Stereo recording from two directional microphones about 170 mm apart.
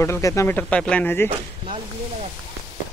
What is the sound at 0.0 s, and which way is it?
Speech, 15° left (ahead or behind).